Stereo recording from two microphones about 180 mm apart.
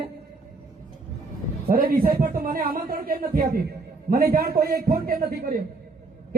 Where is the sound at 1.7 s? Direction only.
55° right (ahead or behind).